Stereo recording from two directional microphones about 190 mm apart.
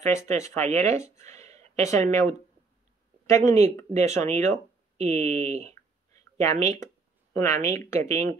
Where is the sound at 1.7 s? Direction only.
15° left (ahead or behind).